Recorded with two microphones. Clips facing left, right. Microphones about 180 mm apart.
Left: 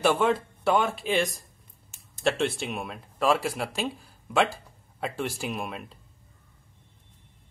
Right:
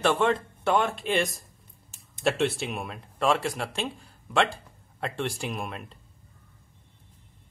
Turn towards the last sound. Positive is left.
turn(degrees=0)  # may be behind; listen again after turning